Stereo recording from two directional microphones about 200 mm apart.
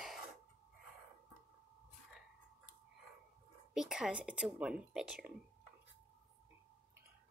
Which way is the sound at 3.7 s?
Centre (ahead or behind).